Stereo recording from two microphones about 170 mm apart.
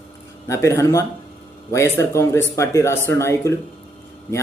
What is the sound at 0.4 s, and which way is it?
Speech, 15° left (ahead or behind).